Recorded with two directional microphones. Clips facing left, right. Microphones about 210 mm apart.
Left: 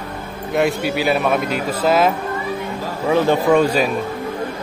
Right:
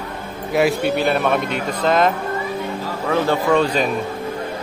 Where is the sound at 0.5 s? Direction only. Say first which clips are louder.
Right 1 dB; centre (ahead or behind).